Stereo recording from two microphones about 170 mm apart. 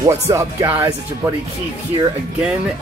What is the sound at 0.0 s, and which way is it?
Speech, 15° right (ahead or behind).